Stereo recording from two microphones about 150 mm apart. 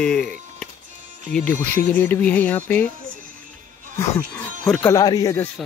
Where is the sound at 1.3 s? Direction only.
10° left (ahead or behind).